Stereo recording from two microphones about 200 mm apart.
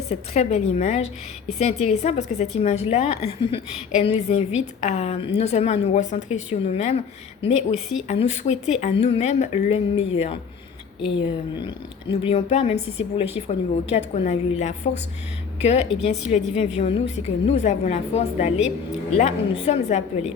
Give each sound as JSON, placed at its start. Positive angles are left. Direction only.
{"t": 0.1, "sound": "a woman's voice", "side_deg": 30}